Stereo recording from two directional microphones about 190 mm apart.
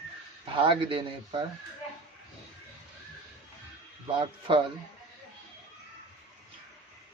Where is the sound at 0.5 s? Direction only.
25° right (ahead or behind).